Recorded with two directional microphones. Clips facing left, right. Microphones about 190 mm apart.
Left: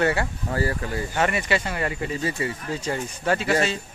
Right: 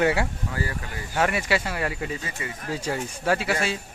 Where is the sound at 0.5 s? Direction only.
40° left (ahead or behind).